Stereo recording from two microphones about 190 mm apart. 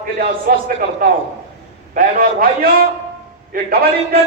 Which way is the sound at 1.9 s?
45° right (ahead or behind).